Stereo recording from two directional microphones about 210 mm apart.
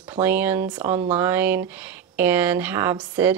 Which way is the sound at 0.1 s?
10° right (ahead or behind).